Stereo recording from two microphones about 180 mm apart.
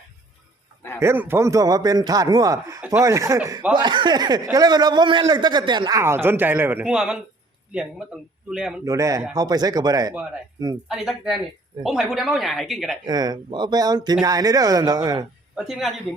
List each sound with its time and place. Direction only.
0.9 s a man's voice: 10° right (ahead or behind)
8.8 s a man's voice: 20° right (ahead or behind)
10.8 s a woman's voice: centre (ahead or behind)
13.1 s a man's voice: 20° right (ahead or behind)
15.5 s a woman's voice: centre (ahead or behind)